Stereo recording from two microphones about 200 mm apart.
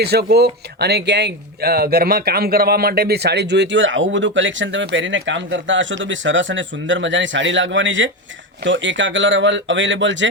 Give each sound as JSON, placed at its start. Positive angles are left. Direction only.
{"t": 0.0, "sound": "speech", "side_deg": -55}